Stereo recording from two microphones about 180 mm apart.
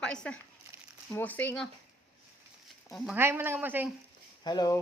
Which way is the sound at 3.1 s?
10° right (ahead or behind).